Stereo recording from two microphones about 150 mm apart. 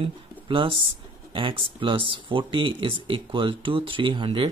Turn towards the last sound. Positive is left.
turn(degrees=-35)  # may be behind; listen again after turning